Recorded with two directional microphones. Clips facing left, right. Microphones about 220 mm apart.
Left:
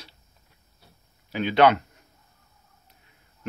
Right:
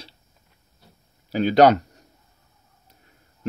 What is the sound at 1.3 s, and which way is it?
Speech, 40° right (ahead or behind).